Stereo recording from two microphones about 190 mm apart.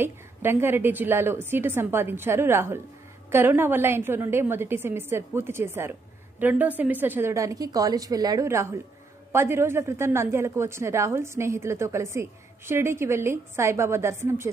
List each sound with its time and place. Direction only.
0.0 s a woman's voice: 10° right (ahead or behind)